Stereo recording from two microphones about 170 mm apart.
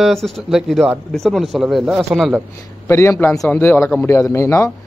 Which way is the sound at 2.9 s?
15° left (ahead or behind).